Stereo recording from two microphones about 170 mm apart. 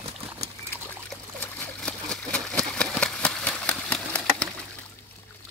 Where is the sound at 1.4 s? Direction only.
5° left (ahead or behind).